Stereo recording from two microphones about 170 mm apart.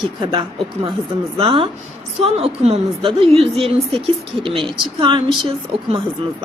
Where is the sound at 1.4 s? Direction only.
30° right (ahead or behind).